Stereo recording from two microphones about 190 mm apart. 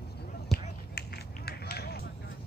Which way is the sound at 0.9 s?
55° left (ahead or behind).